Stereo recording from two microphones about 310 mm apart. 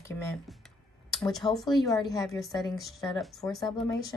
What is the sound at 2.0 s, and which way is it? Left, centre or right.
Speech, centre.